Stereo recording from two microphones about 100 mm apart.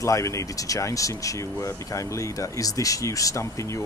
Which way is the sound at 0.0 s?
30° left (ahead or behind).